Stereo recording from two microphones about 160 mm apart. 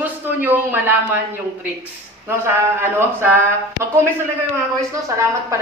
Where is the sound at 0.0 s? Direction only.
10° right (ahead or behind).